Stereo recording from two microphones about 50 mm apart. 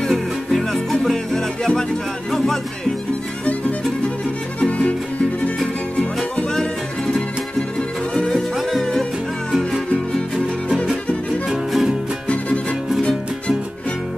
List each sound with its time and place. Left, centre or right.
0.1 s music: centre
4.6 s music: left
6.3 s music: centre
8.5 s music: centre
11.4 s music: centre